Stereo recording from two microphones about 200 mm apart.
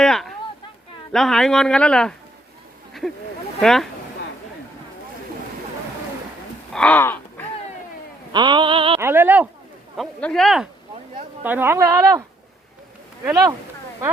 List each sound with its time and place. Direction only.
0.0 s a sound: centre (ahead or behind)
1.1 s speech: centre (ahead or behind)
3.6 s speech: centre (ahead or behind)
6.7 s a sound: 10° left (ahead or behind)
8.3 s mantra: 20° right (ahead or behind)
9.0 s speech: 10° right (ahead or behind)
10.0 s speech: 5° left (ahead or behind); by 12.2 s 15° right (ahead or behind)
13.3 s speech: 15° right (ahead or behind)